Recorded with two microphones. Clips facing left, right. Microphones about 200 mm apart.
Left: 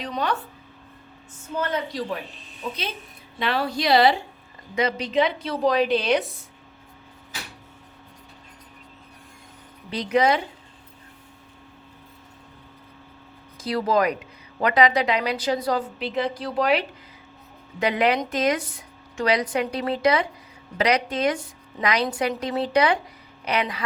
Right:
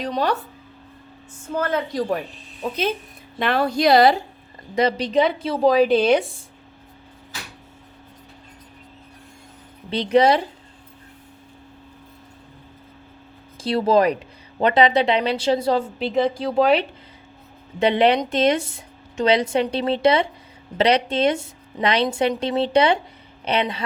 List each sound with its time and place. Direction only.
0.0 s a woman's voice: 40° right (ahead or behind)
1.5 s speech: 50° right (ahead or behind)
3.3 s a woman's voice: 50° right (ahead or behind); by 5.2 s 35° right (ahead or behind)
5.2 s a woman's voice: centre (ahead or behind)
9.9 s a woman's voice: 30° right (ahead or behind)
13.6 s speech: 30° right (ahead or behind)